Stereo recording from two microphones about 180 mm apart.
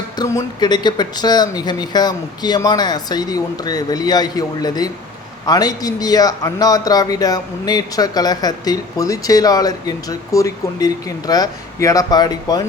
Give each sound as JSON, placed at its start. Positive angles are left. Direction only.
{"t": 0.2, "sound": "a man's voice", "side_deg": 20}